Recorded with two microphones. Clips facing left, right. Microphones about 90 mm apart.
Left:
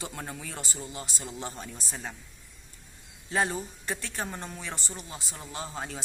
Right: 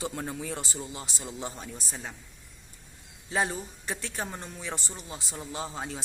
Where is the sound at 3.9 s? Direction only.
15° right (ahead or behind).